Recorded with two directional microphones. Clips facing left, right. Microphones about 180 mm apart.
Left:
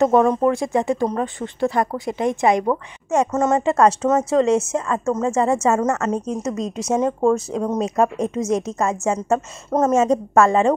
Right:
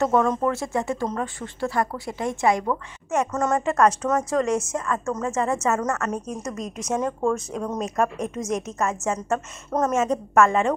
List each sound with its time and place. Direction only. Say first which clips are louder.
0.0 s a woman's voice: left 5 dB; 15° left (ahead or behind); by 10.8 s 30° left (ahead or behind)